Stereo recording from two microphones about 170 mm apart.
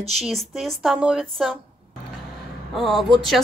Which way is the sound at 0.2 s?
Centre (ahead or behind).